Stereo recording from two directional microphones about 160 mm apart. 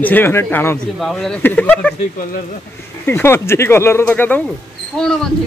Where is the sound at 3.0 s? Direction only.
15° left (ahead or behind).